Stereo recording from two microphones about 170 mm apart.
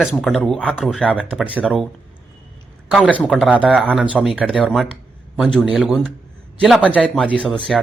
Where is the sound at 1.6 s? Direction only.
5° left (ahead or behind).